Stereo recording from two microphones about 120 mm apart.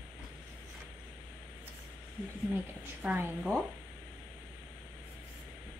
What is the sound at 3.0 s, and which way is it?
Speech, 15° right (ahead or behind).